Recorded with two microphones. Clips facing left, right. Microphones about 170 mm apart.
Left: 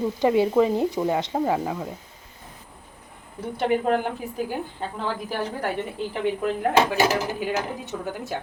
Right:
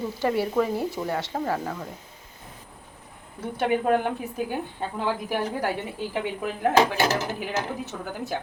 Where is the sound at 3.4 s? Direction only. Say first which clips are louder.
Left 1 dB; centre (ahead or behind).